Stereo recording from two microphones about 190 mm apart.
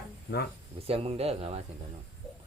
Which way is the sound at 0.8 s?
30° right (ahead or behind).